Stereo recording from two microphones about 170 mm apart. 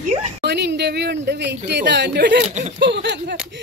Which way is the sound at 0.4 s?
80° right.